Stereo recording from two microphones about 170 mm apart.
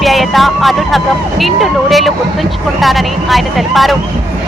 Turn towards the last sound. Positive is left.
turn(degrees=0)  # may be behind; listen again after turning